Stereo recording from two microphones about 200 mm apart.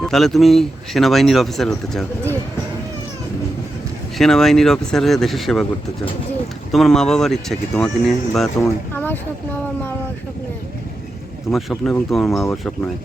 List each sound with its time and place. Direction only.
0.0 s speech: centre (ahead or behind)
4.2 s speech: centre (ahead or behind)
6.7 s speech: centre (ahead or behind)
11.5 s speech: centre (ahead or behind)